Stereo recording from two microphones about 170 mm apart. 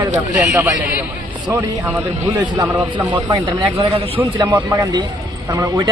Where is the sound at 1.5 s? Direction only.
20° right (ahead or behind).